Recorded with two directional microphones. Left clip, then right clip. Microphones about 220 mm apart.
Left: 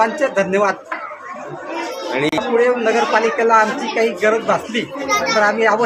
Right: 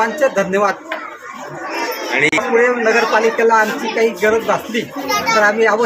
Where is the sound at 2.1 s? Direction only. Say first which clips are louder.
Right 4 dB; 40° left (ahead or behind).